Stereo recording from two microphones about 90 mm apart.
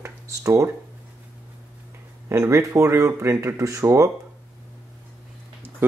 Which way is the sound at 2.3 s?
30° right (ahead or behind).